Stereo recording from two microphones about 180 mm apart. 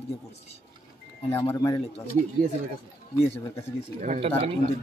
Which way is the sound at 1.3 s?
15° left (ahead or behind).